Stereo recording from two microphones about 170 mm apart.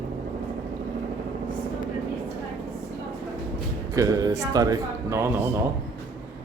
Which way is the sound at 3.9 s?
20° right (ahead or behind).